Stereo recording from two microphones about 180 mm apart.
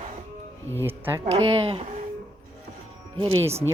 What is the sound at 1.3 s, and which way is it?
Speech, 30° right (ahead or behind).